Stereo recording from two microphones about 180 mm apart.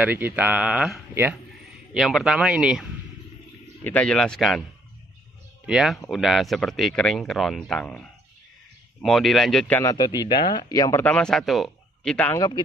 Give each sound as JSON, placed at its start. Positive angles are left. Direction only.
{"t": 0.0, "sound": "speech", "side_deg": -10}
{"t": 3.8, "sound": "speech", "side_deg": 10}
{"t": 5.7, "sound": "speech", "side_deg": 0}
{"t": 9.8, "sound": "speech", "side_deg": 25}
{"t": 12.4, "sound": "speech", "side_deg": 25}